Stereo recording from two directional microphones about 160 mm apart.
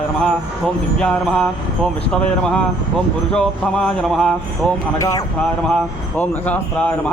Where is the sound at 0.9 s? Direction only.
5° left (ahead or behind).